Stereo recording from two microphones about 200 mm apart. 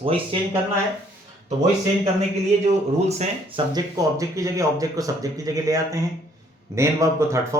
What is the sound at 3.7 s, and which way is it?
Speech, 15° right (ahead or behind).